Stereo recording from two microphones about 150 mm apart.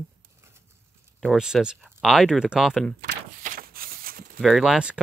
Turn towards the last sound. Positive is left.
turn(degrees=-5)  # may be behind; listen again after turning